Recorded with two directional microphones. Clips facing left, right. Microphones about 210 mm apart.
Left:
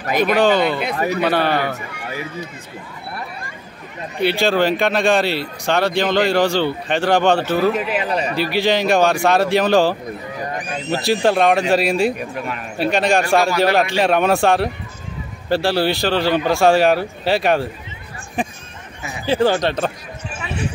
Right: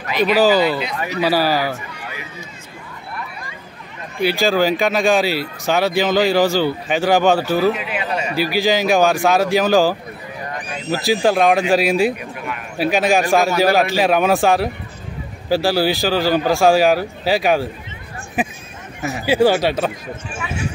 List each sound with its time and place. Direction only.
0.0 s speech: 45° left (ahead or behind)
0.3 s speech: 5° right (ahead or behind)
0.9 s speech: 45° left (ahead or behind)
1.2 s speech: 5° right (ahead or behind)
4.2 s speech: centre (ahead or behind)